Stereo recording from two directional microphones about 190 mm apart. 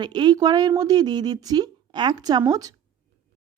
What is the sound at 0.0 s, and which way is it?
A woman's voice, 25° right (ahead or behind).